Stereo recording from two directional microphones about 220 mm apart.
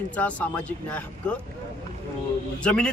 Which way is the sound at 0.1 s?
5° left (ahead or behind).